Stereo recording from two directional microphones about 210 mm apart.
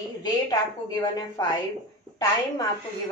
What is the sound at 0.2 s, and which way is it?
A woman's voice, 20° left (ahead or behind).